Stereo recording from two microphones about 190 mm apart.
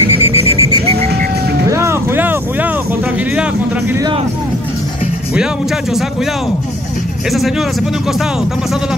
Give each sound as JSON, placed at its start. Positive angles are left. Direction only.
{"t": 0.2, "sound": "a sound", "side_deg": 30}
{"t": 1.7, "sound": "vehicle", "side_deg": -15}
{"t": 7.2, "sound": "speech", "side_deg": 0}